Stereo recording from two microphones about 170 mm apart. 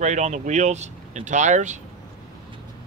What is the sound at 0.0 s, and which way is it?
Speech, 45° right (ahead or behind).